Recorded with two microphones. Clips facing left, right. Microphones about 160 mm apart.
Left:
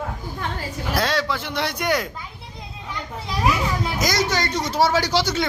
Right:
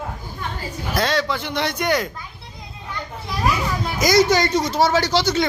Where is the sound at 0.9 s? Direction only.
5° left (ahead or behind).